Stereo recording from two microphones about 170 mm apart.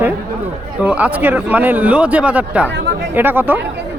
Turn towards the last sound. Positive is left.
turn(degrees=-10)  # may be behind; listen again after turning